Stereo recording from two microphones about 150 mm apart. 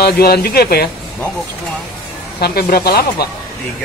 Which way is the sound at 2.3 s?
90° left.